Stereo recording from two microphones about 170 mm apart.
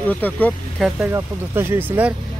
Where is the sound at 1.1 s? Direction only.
15° right (ahead or behind).